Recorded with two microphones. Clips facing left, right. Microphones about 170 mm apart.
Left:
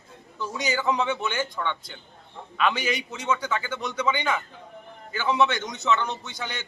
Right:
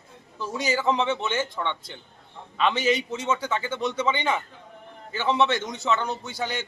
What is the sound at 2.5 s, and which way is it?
A man's voice, 25° right (ahead or behind).